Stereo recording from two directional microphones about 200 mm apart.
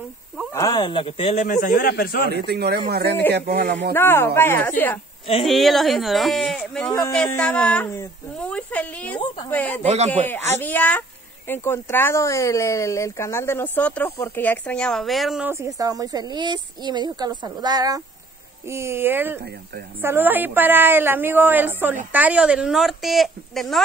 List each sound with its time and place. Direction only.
0.5 s speech: 15° left (ahead or behind); by 2.3 s 50° left (ahead or behind)
2.3 s speech: 55° right (ahead or behind)
3.9 s speech: 10° left (ahead or behind)
5.2 s speech: 30° left (ahead or behind)
5.5 s speech: centre (ahead or behind)
9.8 s speech: 35° right (ahead or behind)
10.2 s speech: 10° left (ahead or behind)
15.5 s a woman's voice: 15° right (ahead or behind); by 23.8 s centre (ahead or behind)